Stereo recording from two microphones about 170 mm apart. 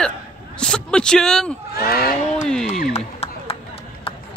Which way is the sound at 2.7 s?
40° left (ahead or behind).